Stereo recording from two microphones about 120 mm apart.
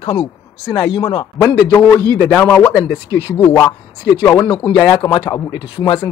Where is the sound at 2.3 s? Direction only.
15° left (ahead or behind).